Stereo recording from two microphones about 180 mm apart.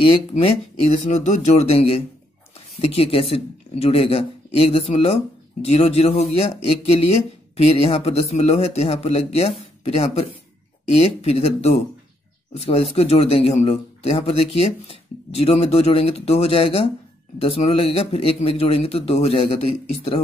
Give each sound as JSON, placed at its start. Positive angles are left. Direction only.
{"t": 0.0, "sound": "speech", "side_deg": 30}